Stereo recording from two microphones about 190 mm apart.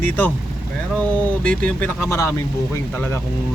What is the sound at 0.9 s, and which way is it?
Speech, 10° left (ahead or behind).